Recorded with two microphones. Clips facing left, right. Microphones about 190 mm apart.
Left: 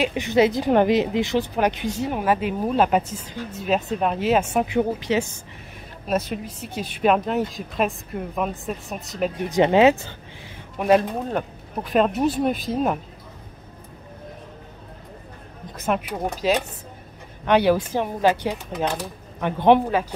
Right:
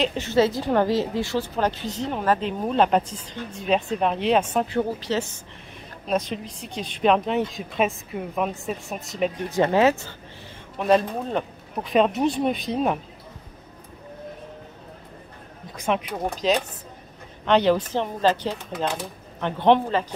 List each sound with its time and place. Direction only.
0.0 s speech: 15° left (ahead or behind)
6.0 s speech: 5° left (ahead or behind)
9.5 s speech: 20° left (ahead or behind)
11.2 s speech: centre (ahead or behind)
15.7 s speech: 5° left (ahead or behind)